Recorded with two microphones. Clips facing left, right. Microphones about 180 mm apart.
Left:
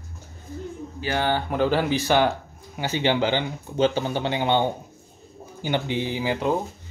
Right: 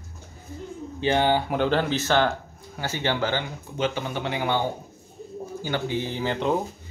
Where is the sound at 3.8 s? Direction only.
30° left (ahead or behind); by 6.6 s 5° left (ahead or behind).